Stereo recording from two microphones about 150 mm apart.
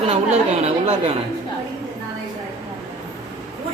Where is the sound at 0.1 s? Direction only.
45° right (ahead or behind).